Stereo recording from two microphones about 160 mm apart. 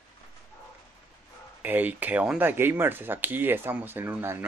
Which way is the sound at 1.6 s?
10° right (ahead or behind).